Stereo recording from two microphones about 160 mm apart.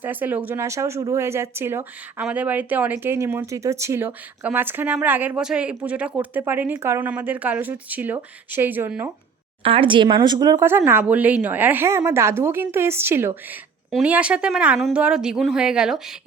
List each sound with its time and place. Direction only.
0.0 s speech: 10° right (ahead or behind)
9.6 s speech: 35° right (ahead or behind); by 16.1 s 5° right (ahead or behind)